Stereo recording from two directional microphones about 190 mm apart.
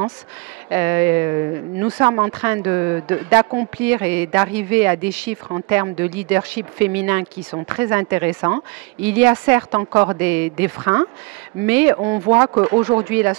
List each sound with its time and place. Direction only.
0.7 s a woman's voice: 10° right (ahead or behind)